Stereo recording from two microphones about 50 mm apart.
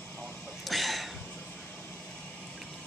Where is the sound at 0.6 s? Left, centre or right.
Centre.